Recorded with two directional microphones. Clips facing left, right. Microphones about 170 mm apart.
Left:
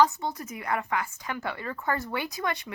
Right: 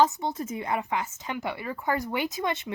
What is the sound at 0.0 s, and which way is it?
A woman's voice, 20° right (ahead or behind).